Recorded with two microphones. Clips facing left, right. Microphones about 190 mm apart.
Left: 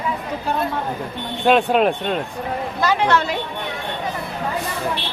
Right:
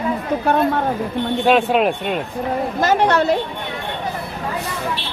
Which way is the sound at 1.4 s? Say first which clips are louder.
Left 1 dB; centre (ahead or behind).